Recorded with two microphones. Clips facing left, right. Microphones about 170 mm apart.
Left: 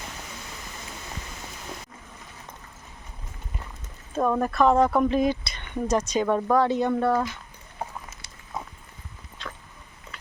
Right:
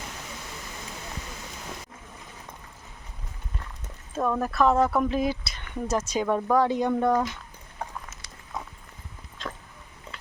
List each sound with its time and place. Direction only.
4.4 s speech: centre (ahead or behind)
7.8 s clip-clop: 5° left (ahead or behind)